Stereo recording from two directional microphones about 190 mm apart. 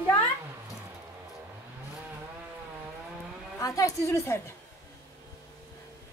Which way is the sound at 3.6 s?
15° left (ahead or behind).